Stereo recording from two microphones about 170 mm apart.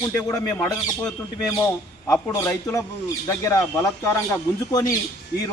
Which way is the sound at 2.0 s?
15° left (ahead or behind).